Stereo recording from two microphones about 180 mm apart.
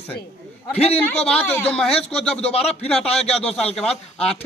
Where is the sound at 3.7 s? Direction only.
Centre (ahead or behind).